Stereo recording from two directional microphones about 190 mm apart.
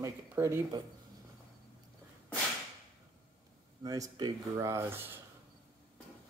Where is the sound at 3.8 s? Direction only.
20° right (ahead or behind).